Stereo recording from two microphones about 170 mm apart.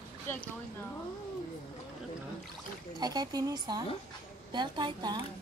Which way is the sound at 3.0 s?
25° right (ahead or behind).